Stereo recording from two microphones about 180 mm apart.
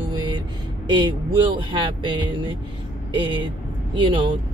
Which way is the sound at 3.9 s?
25° right (ahead or behind).